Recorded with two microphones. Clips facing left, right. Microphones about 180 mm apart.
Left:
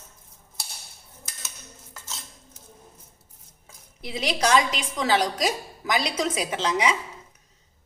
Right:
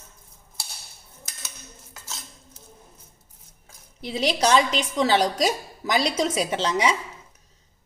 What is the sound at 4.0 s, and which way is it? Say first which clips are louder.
A woman's voice: right 3 dB; 35° right (ahead or behind).